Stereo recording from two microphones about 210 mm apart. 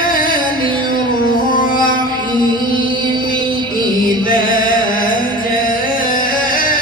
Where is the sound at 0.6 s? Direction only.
20° right (ahead or behind).